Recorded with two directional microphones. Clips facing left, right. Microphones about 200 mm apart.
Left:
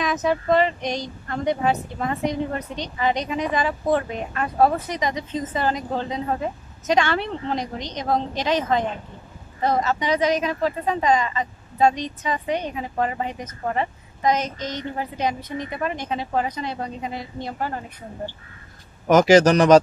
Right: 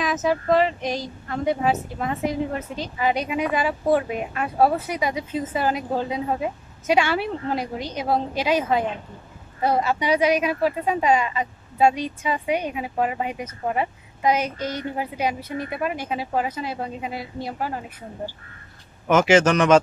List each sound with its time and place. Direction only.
0.0 s speech: centre (ahead or behind)
19.0 s speech: 40° left (ahead or behind)